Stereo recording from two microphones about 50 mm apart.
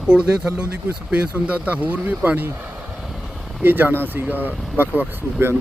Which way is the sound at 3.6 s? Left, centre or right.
Right.